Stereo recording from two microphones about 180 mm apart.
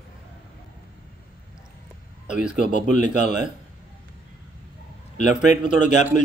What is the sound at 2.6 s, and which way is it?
Speech, 45° left (ahead or behind).